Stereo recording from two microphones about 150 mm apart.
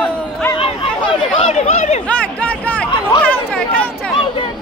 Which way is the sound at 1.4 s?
45° left (ahead or behind).